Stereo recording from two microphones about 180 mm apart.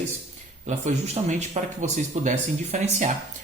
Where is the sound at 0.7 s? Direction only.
40° right (ahead or behind).